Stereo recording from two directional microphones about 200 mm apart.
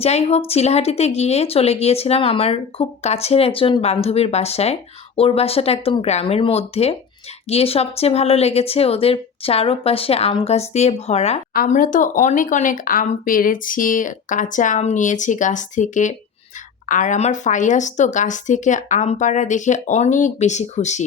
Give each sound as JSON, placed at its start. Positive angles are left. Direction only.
{"t": 0.0, "sound": "a woman's voice", "side_deg": 30}
{"t": 11.5, "sound": "a woman's voice", "side_deg": 45}